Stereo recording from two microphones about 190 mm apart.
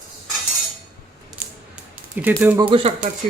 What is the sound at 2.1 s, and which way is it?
Speech, 10° right (ahead or behind).